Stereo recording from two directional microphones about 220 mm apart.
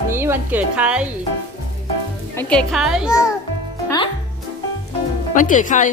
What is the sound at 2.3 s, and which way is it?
Speech, 5° left (ahead or behind).